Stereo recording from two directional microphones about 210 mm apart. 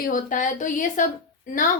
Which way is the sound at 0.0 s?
40° left (ahead or behind).